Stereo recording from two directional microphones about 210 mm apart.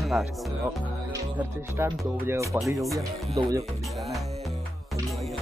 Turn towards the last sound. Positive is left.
turn(degrees=-20)  # may be behind; listen again after turning